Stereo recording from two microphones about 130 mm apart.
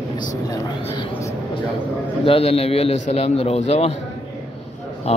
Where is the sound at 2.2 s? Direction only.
50° left (ahead or behind).